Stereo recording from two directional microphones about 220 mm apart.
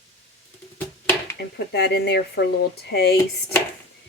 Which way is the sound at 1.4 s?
50° left (ahead or behind).